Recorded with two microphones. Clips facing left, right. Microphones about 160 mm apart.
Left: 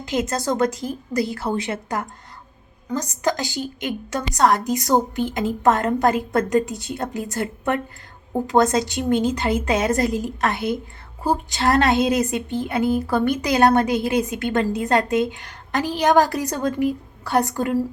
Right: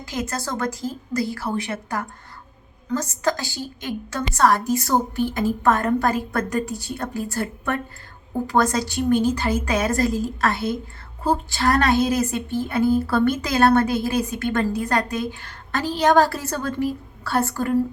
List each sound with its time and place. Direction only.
0.0 s a woman's voice: 20° left (ahead or behind)